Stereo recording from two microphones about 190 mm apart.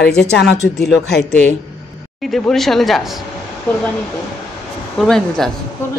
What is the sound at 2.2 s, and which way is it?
Speech, centre (ahead or behind).